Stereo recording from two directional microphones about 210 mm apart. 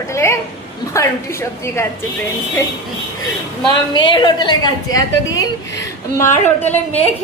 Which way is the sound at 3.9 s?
20° left (ahead or behind).